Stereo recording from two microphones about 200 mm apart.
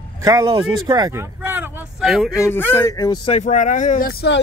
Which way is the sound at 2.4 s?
10° left (ahead or behind).